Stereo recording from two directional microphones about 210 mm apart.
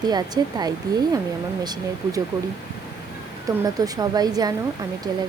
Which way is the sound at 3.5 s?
20° right (ahead or behind).